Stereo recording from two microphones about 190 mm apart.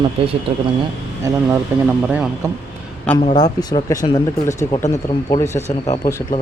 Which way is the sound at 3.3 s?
20° left (ahead or behind).